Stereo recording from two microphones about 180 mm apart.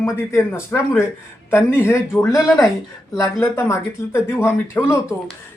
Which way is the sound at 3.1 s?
15° left (ahead or behind).